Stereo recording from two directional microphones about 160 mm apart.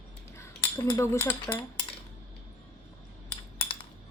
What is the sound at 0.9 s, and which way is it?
Speech, 20° left (ahead or behind).